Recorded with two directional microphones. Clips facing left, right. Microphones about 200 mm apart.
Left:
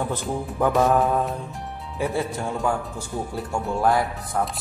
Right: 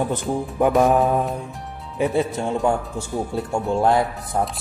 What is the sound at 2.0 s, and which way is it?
Speech, 20° right (ahead or behind).